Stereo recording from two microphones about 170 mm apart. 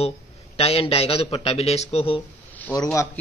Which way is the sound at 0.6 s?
35° left (ahead or behind).